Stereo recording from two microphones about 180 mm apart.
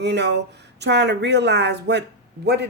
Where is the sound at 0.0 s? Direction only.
70° right (ahead or behind).